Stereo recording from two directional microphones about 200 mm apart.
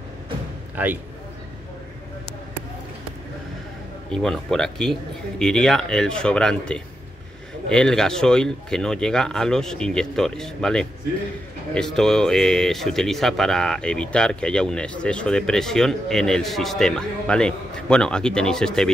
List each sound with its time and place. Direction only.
4.1 s speech: centre (ahead or behind)